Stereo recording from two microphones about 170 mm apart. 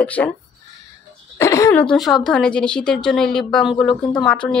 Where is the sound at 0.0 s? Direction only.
10° left (ahead or behind).